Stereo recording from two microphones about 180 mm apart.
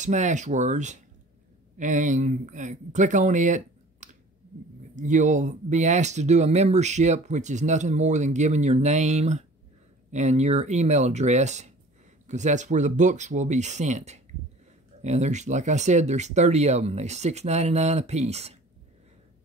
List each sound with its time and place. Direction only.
0.0 s speech: 40° right (ahead or behind)